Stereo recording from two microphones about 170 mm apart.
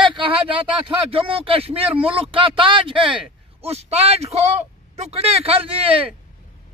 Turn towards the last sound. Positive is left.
turn(degrees=-30)  # may be behind; listen again after turning